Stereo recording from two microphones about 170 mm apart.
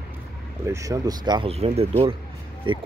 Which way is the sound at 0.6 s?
15° right (ahead or behind).